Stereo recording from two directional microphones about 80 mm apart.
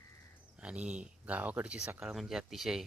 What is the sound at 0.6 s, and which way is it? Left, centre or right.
Speech, centre.